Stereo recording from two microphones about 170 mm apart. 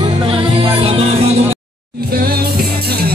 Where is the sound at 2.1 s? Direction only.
65° right (ahead or behind).